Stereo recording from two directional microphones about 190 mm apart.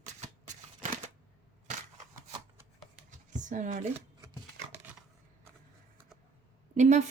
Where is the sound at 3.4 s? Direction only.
40° right (ahead or behind).